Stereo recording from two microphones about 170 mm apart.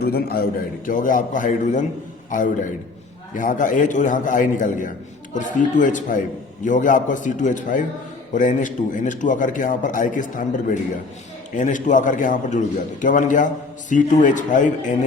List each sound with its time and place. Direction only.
0.0 s a man's voice: 65° left (ahead or behind)
0.9 s a man's voice: 50° left (ahead or behind)
3.3 s a man's voice: 50° left (ahead or behind)